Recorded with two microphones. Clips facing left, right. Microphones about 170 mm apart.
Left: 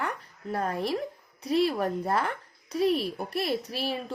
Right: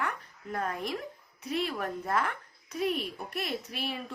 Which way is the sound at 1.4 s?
35° left (ahead or behind).